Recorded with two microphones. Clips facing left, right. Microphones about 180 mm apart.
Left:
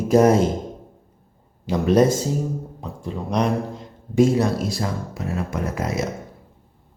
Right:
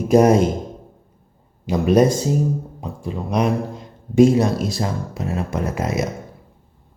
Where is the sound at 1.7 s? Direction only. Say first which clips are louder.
Right 1 dB; 10° right (ahead or behind).